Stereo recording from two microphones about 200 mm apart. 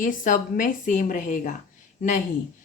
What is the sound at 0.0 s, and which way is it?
Speech, 40° left (ahead or behind).